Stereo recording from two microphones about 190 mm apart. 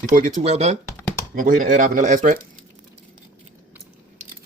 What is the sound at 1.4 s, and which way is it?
Speech, 45° right (ahead or behind).